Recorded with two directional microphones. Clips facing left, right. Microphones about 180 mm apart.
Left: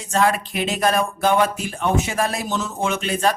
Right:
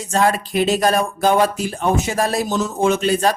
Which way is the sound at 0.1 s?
35° right (ahead or behind).